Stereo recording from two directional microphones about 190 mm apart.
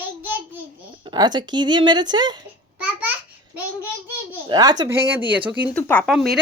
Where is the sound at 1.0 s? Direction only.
25° right (ahead or behind).